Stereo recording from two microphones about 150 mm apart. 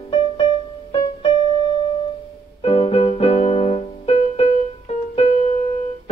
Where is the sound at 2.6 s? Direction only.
40° left (ahead or behind).